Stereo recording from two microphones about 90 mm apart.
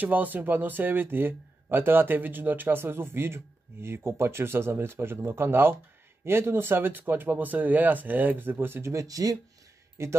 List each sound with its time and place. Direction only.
0.0 s speech: 20° right (ahead or behind); by 9.4 s 40° right (ahead or behind)